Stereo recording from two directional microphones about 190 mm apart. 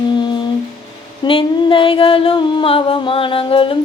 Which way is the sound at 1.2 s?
25° left (ahead or behind).